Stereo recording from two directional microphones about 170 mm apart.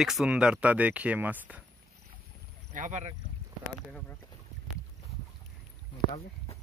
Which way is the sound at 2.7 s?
45° right (ahead or behind).